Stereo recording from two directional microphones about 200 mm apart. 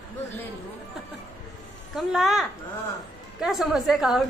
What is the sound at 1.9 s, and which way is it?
A woman's voice, centre (ahead or behind).